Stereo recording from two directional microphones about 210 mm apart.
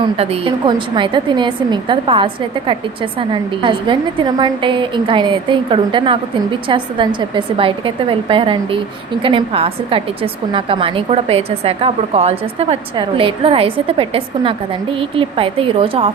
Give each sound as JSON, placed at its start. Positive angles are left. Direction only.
{"t": 0.0, "sound": "a woman's voice", "side_deg": -25}